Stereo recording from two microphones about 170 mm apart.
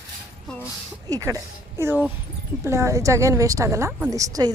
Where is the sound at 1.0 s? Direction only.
20° right (ahead or behind).